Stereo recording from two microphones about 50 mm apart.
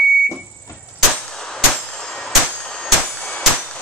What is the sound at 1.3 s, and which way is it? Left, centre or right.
Clang, centre.